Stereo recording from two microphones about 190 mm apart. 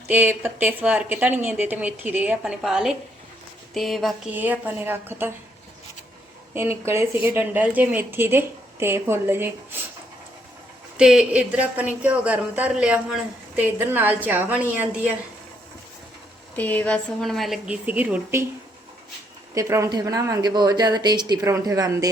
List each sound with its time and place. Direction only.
0.1 s a woman's voice: 10° right (ahead or behind)
6.5 s a woman's voice: 10° right (ahead or behind)
10.9 s a woman's voice: 5° right (ahead or behind)
16.6 s a woman's voice: 10° left (ahead or behind); by 18.4 s 10° right (ahead or behind)
19.5 s a woman's voice: 15° right (ahead or behind)